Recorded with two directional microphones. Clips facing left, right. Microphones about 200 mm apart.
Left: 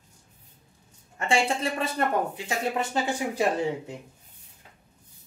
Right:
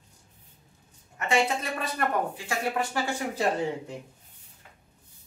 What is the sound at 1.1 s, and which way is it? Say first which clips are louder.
Speech: left 1 dB; 30° left (ahead or behind).